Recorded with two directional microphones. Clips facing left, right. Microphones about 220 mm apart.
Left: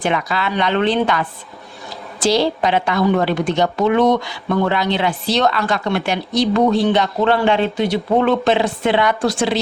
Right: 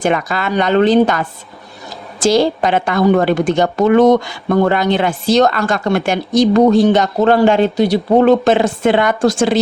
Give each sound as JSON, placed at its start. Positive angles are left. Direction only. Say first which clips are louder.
{"t": 0.0, "sound": "a woman's voice", "louder": "right 3 dB", "side_deg": -45}